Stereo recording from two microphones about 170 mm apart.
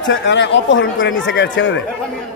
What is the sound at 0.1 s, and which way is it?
Speech, 90° left.